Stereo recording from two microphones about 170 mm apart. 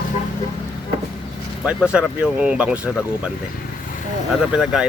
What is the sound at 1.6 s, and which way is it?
Speech, 5° right (ahead or behind).